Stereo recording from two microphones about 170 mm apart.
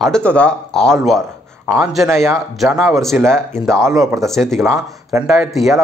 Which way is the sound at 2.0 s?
15° right (ahead or behind).